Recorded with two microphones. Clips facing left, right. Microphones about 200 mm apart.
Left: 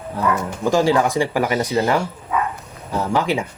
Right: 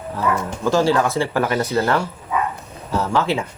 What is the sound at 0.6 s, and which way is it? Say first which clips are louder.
Speech: left 1 dB; 15° left (ahead or behind).